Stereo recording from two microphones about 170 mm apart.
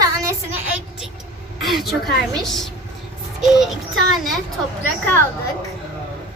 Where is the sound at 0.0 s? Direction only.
20° right (ahead or behind).